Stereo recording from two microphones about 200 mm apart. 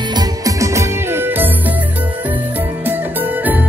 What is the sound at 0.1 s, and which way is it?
Music, 20° right (ahead or behind).